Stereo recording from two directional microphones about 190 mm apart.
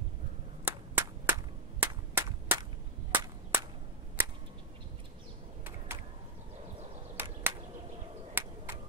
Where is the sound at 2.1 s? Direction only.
15° right (ahead or behind).